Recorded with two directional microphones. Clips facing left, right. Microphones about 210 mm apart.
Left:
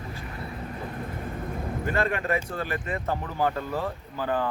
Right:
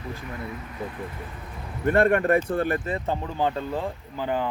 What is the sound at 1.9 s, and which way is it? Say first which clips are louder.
Speech: right 8 dB; 55° right (ahead or behind).